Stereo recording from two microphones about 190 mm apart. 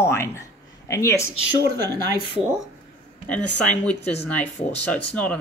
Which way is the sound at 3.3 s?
5° left (ahead or behind).